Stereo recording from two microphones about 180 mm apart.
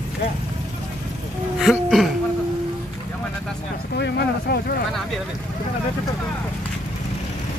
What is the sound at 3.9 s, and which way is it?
Speech, 65° left (ahead or behind).